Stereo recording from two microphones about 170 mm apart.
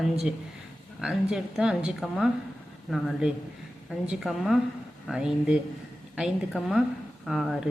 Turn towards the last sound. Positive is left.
turn(degrees=0)  # may be behind; listen again after turning